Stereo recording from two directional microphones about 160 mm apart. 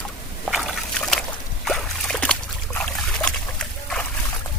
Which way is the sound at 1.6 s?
5° left (ahead or behind).